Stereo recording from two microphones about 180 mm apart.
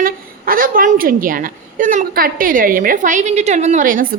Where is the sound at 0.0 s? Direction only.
50° right (ahead or behind).